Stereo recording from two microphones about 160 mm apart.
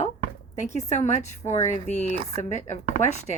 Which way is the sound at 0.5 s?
45° left (ahead or behind).